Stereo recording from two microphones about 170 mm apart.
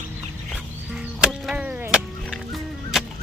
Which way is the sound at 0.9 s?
5° right (ahead or behind).